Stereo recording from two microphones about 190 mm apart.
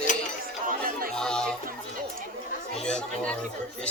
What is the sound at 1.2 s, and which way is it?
Music, 5° left (ahead or behind).